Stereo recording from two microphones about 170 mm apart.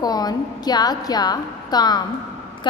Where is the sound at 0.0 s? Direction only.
20° left (ahead or behind).